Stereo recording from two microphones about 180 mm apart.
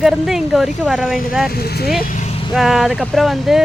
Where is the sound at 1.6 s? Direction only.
60° left (ahead or behind).